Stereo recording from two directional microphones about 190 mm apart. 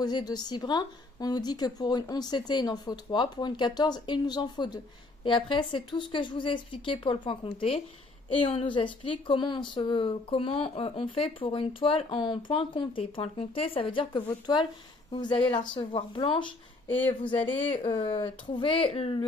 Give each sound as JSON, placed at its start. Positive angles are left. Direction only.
{"t": 0.0, "sound": "speech", "side_deg": 20}
{"t": 16.8, "sound": "speech", "side_deg": 10}
{"t": 17.1, "sound": "speech", "side_deg": 25}